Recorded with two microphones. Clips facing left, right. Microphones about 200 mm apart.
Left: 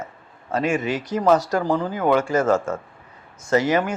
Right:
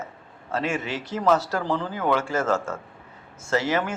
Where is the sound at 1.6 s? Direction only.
40° left (ahead or behind).